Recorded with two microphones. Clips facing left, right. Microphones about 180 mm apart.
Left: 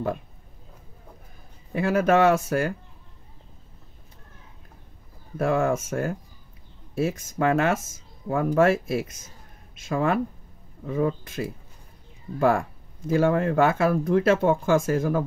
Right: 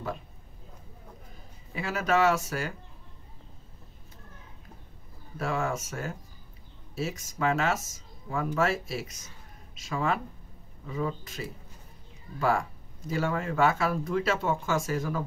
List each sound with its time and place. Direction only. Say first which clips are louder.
1.7 s speech: left 7 dB; 55° left (ahead or behind)
5.4 s speech: left 8 dB; 55° left (ahead or behind)